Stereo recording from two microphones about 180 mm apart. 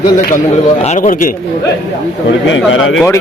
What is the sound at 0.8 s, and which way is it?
Speech, 40° left (ahead or behind).